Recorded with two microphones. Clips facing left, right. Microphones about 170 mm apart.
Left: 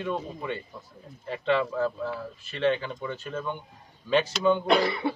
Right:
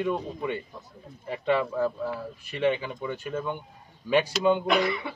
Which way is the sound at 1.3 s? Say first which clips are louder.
Even; 15° right (ahead or behind).